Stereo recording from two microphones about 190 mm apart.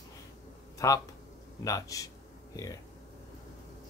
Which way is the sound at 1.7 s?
15° left (ahead or behind).